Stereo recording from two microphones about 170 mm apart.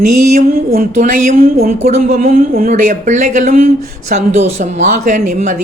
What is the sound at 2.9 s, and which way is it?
Speech, 45° right (ahead or behind).